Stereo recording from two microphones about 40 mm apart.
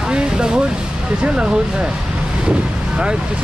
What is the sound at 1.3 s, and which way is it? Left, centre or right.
Speech, right.